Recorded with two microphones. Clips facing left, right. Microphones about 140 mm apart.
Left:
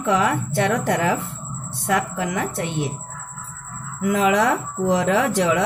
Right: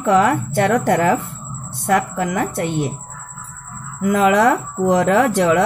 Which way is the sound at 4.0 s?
55° right (ahead or behind).